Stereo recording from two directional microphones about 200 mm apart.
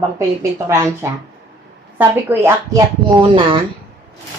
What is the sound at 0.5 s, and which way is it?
Speech, 15° right (ahead or behind).